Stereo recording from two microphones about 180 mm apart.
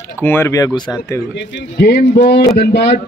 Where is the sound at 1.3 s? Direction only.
80° left.